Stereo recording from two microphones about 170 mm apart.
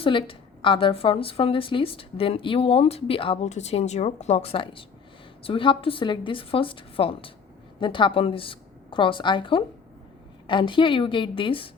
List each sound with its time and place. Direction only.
0.0 s a woman's voice: 30° left (ahead or behind)